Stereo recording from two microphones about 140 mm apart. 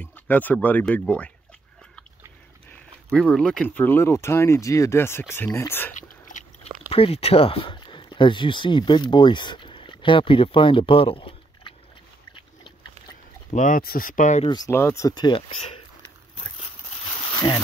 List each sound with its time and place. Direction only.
0.0 s speech: 10° left (ahead or behind)
2.7 s speech: 5° left (ahead or behind)
5.9 s a sound: 60° left (ahead or behind)
6.9 s speech: 45° left (ahead or behind)
13.5 s speech: 65° left (ahead or behind)
14.4 s speech: 30° left (ahead or behind)
14.7 s speech: 20° left (ahead or behind); by 15.8 s 35° left (ahead or behind)